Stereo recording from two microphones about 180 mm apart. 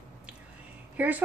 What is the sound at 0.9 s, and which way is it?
Speech, 10° right (ahead or behind).